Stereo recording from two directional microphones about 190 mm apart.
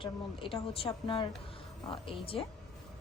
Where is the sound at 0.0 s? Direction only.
25° left (ahead or behind).